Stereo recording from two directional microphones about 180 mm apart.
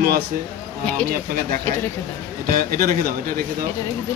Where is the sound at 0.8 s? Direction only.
10° left (ahead or behind).